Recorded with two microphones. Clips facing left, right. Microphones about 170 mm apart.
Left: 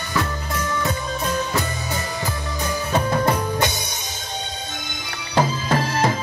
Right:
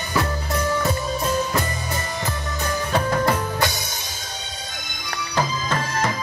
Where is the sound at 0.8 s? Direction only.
Centre (ahead or behind); by 3.7 s 15° left (ahead or behind).